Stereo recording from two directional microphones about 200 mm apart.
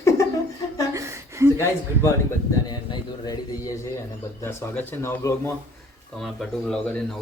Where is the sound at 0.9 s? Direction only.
15° right (ahead or behind).